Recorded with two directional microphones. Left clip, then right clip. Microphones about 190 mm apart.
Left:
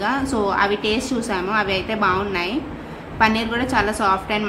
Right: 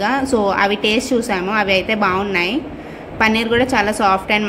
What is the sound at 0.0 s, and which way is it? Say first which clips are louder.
A woman's voice: right 5 dB; 15° right (ahead or behind).